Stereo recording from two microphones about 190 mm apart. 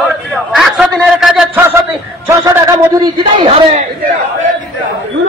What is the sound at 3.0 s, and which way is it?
Speech, 25° right (ahead or behind).